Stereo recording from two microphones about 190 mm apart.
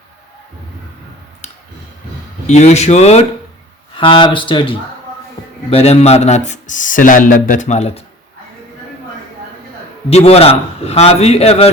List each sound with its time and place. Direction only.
2.5 s speech: 35° left (ahead or behind)
10.1 s speech: 35° left (ahead or behind)